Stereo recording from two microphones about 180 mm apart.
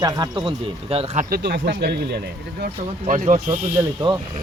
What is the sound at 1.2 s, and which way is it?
Speech, 60° right (ahead or behind).